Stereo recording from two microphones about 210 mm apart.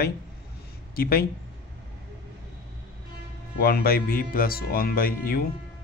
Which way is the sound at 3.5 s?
45° left (ahead or behind).